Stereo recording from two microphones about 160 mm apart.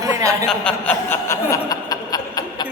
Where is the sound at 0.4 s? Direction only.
5° left (ahead or behind); by 2.6 s 25° left (ahead or behind).